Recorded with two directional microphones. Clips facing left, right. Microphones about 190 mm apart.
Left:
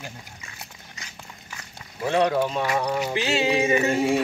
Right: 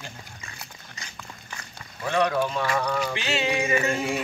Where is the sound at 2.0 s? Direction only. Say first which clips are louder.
Left 2 dB; 25° left (ahead or behind).